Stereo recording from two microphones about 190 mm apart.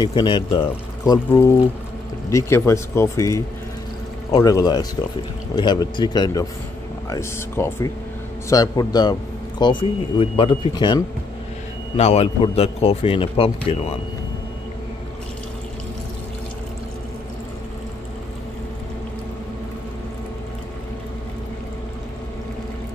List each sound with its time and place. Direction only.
0.0 s speech: 25° left (ahead or behind)
12.0 s a man's voice: 35° left (ahead or behind)